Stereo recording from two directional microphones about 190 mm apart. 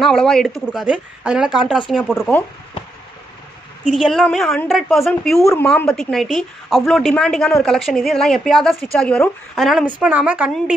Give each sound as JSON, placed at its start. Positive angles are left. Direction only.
{"t": 0.0, "sound": "a woman's voice", "side_deg": 0}
{"t": 3.9, "sound": "a woman's voice", "side_deg": 0}